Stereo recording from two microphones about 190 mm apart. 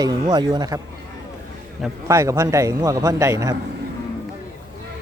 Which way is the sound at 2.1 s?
15° right (ahead or behind).